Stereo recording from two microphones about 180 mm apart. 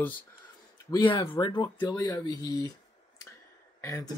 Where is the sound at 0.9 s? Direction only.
25° left (ahead or behind).